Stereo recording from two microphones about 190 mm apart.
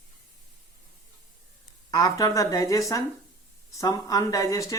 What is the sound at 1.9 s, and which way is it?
Speech, 20° left (ahead or behind).